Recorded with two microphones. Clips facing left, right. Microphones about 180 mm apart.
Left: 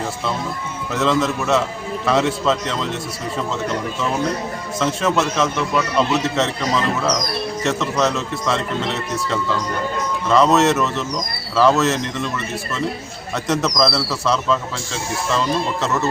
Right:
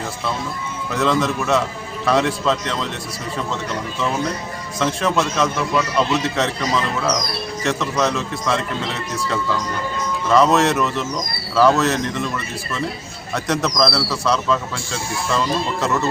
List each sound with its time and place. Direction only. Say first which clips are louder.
0.9 s a man's voice: even; centre (ahead or behind)
4.8 s a man's voice: even; centre (ahead or behind)
13.3 s a man's voice: left 1 dB; centre (ahead or behind)